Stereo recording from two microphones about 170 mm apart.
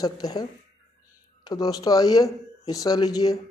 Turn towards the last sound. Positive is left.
turn(degrees=20)  # may be behind; listen again after turning